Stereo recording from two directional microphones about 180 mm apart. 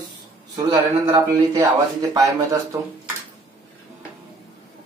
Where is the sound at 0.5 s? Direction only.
20° right (ahead or behind).